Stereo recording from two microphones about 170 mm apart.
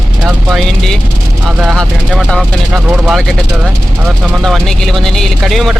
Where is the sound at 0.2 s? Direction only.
Centre (ahead or behind).